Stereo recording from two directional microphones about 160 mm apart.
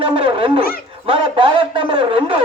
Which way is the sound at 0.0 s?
30° right (ahead or behind).